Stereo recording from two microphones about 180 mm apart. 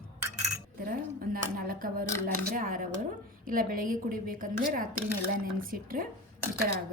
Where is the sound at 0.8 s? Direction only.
55° right (ahead or behind).